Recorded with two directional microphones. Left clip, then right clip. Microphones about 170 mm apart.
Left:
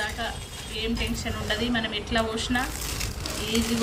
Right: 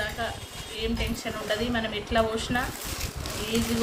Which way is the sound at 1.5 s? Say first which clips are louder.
Left 1 dB; 55° right (ahead or behind).